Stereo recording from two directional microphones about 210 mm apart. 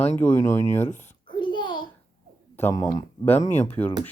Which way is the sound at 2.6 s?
10° left (ahead or behind).